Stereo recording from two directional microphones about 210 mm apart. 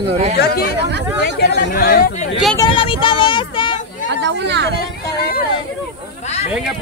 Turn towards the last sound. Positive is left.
turn(degrees=45)  # may be behind; listen again after turning